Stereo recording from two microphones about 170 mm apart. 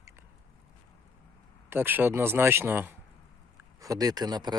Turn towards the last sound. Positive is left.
turn(degrees=-25)  # may be behind; listen again after turning